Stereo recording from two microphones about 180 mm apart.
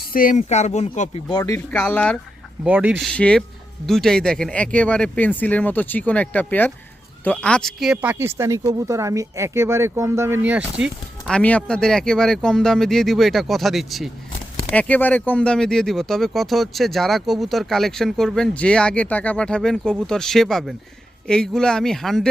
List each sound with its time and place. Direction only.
0.1 s speech: 50° left (ahead or behind)
1.3 s speech: 20° left (ahead or behind)
2.6 s speech: 10° right (ahead or behind)
3.1 s speech: 5° left (ahead or behind)
11.3 s speech: 5° left (ahead or behind)